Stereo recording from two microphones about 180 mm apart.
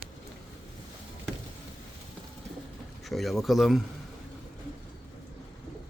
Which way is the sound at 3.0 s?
Centre (ahead or behind).